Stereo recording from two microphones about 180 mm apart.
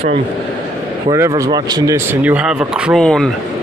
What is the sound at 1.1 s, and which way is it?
Speech, 20° right (ahead or behind).